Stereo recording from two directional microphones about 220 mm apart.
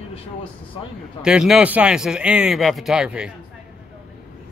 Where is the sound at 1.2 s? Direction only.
5° right (ahead or behind).